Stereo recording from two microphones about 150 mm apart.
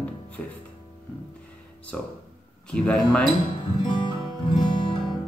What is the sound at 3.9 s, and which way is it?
Music, 30° left (ahead or behind).